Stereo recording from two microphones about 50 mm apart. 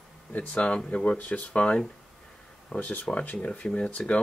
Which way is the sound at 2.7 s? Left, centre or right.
Left.